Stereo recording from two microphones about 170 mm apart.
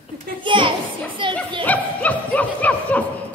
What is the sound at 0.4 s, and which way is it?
Children playing, 30° right (ahead or behind).